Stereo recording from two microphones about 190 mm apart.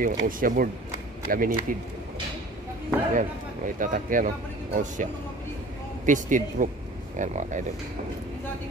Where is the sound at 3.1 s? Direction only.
45° right (ahead or behind).